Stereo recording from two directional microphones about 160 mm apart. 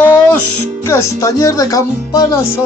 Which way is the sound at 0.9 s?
20° left (ahead or behind).